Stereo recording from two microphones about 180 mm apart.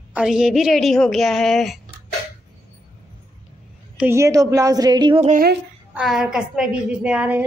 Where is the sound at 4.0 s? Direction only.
15° right (ahead or behind).